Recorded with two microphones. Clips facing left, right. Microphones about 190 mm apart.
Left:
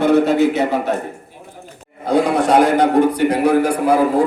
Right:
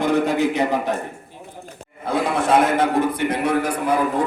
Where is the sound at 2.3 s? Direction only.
35° left (ahead or behind).